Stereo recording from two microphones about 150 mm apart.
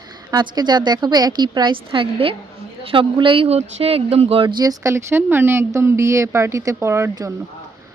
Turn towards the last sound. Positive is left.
turn(degrees=-20)  # may be behind; listen again after turning